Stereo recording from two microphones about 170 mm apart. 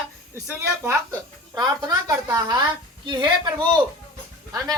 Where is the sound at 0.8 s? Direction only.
15° right (ahead or behind).